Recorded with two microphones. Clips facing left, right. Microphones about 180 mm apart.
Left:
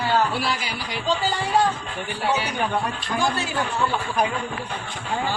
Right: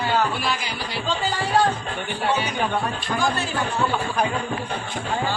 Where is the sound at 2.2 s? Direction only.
5° left (ahead or behind).